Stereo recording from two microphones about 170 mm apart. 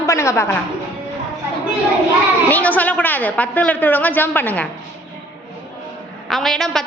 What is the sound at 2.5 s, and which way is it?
A woman's voice, 10° left (ahead or behind).